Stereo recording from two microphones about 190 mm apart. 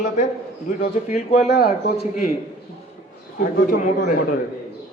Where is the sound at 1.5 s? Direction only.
55° left (ahead or behind).